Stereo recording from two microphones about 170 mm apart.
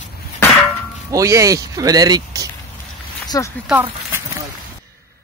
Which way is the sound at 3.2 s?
20° left (ahead or behind).